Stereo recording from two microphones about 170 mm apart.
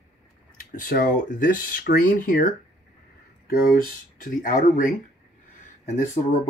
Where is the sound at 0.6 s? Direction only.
55° left (ahead or behind).